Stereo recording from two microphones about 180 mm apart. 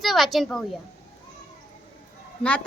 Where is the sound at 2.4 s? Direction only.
5° left (ahead or behind).